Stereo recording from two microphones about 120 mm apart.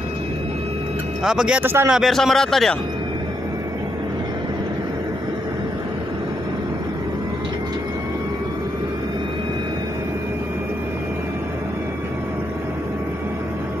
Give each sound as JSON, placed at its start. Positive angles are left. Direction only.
{"t": 1.2, "sound": "speech", "side_deg": -5}
{"t": 1.6, "sound": "speech", "side_deg": -20}
{"t": 1.9, "sound": "speech", "side_deg": 0}